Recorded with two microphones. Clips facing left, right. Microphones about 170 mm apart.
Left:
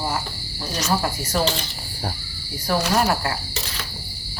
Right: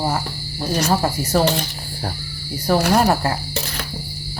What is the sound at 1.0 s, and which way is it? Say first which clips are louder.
Cricket: right 5 dB; 30° right (ahead or behind).